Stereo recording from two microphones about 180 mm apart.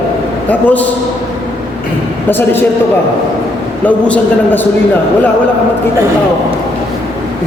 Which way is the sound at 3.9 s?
10° left (ahead or behind).